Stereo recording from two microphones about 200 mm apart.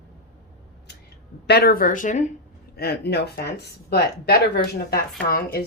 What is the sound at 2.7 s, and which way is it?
Speech, 55° left (ahead or behind).